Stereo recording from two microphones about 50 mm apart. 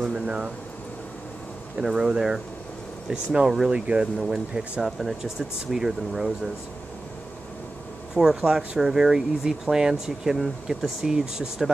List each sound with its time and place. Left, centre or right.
0.1 s speech: centre
1.8 s speech: centre
3.4 s speech: centre
3.7 s speech: centre
8.1 s speech: centre